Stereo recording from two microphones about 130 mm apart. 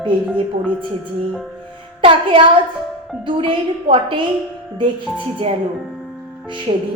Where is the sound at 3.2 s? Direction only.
40° right (ahead or behind).